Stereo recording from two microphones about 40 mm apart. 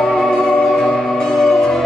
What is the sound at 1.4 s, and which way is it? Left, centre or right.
Music, centre.